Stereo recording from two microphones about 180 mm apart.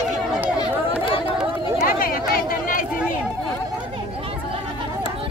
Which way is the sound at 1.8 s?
50° left (ahead or behind).